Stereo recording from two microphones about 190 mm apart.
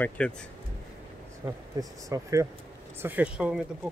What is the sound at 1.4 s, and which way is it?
Speech, 10° right (ahead or behind).